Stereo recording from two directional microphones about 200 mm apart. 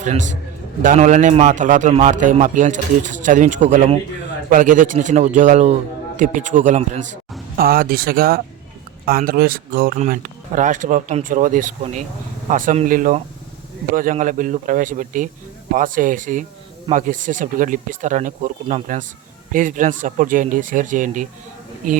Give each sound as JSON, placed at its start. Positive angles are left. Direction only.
{"t": 0.0, "sound": "a man's voice", "side_deg": -35}
{"t": 7.5, "sound": "a man's voice", "side_deg": -45}